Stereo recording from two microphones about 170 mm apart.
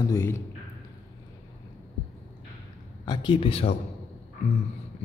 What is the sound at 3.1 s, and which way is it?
Speech, 30° left (ahead or behind).